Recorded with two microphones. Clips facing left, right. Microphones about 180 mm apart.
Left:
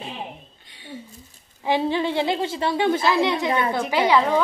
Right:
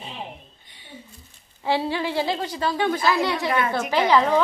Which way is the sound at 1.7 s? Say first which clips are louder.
Left 2 dB; 20° left (ahead or behind).